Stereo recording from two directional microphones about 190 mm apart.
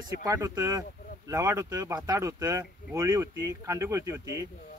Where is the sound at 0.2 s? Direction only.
15° right (ahead or behind).